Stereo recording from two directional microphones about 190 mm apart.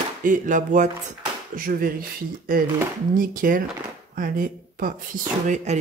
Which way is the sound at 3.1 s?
45° right (ahead or behind).